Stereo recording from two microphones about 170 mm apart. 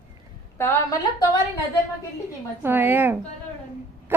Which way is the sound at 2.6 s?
10° right (ahead or behind).